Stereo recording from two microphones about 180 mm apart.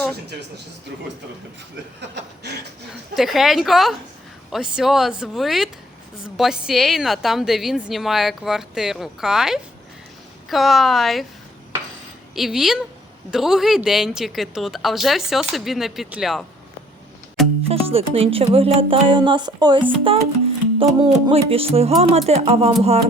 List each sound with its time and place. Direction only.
2.0 s chuckle: 70° right (ahead or behind)
3.2 s a woman's voice: centre (ahead or behind)
12.3 s a woman's voice: centre (ahead or behind)
17.7 s speech: 35° right (ahead or behind)
21.2 s speech: 30° right (ahead or behind)